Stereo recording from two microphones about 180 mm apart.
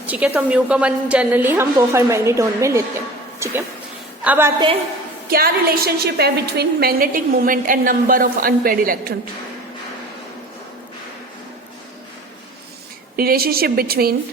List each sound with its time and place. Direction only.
0.0 s a woman's voice: 10° right (ahead or behind)
4.2 s a woman's voice: 10° right (ahead or behind)
5.3 s a woman's voice: 55° right (ahead or behind)
13.1 s a woman's voice: 55° right (ahead or behind)